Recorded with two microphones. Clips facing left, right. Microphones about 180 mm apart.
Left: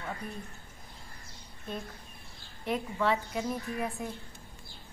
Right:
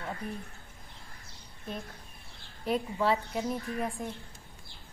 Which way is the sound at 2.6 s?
35° right (ahead or behind).